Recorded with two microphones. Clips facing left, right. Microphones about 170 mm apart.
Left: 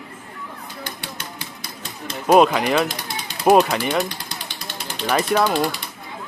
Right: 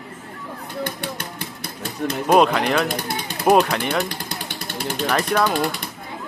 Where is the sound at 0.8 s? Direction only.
60° right (ahead or behind).